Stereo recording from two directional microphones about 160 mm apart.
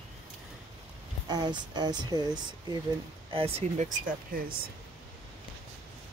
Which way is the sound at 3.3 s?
40° right (ahead or behind).